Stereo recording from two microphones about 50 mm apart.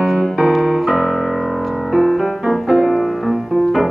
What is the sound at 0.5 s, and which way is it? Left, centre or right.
Piano, centre.